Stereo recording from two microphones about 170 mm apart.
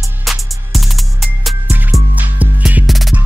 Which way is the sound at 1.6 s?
10° right (ahead or behind).